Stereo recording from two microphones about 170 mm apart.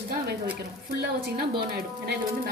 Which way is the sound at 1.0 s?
70° right (ahead or behind).